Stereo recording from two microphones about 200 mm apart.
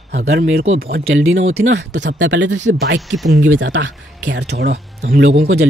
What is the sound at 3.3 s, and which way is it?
Speech, 65° right (ahead or behind).